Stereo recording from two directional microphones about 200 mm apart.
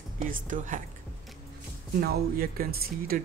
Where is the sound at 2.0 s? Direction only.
50° right (ahead or behind).